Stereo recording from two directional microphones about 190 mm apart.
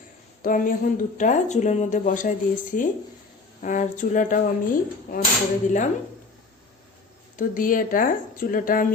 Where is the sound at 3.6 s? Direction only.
40° left (ahead or behind).